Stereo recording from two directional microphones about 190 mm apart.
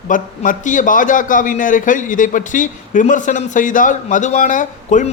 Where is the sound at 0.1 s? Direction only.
45° left (ahead or behind).